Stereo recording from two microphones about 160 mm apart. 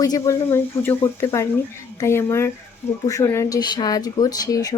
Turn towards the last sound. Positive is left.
turn(degrees=25)  # may be behind; listen again after turning